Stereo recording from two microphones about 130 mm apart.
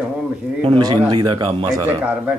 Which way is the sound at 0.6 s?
40° right (ahead or behind).